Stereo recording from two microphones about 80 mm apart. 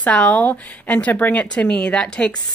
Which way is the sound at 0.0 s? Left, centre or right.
Centre.